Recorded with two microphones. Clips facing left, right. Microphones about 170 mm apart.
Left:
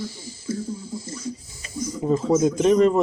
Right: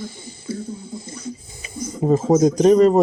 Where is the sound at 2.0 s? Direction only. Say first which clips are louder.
Right 4 dB; 45° right (ahead or behind).